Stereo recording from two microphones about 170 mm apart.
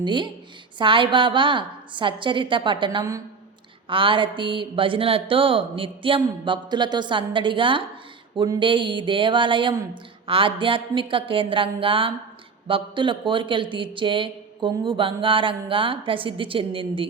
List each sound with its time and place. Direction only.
0.0 s speech: 30° right (ahead or behind)